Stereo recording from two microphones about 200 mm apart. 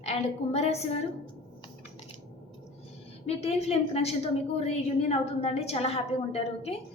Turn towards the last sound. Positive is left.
turn(degrees=30)  # may be behind; listen again after turning